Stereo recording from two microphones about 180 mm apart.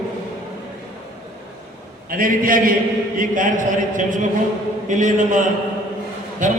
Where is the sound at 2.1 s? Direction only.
50° right (ahead or behind).